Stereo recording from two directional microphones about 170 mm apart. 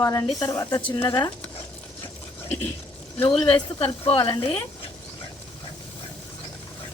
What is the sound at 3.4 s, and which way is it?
Speech, 30° left (ahead or behind).